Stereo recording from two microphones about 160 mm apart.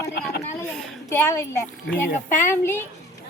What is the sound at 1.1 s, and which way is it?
Speech, 15° left (ahead or behind).